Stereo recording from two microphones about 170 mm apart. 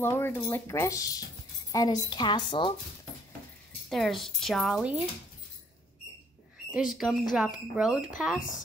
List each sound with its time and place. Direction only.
0.0 s a woman's voice: 15° left (ahead or behind)
3.9 s speech: centre (ahead or behind)
6.7 s speech: 5° right (ahead or behind)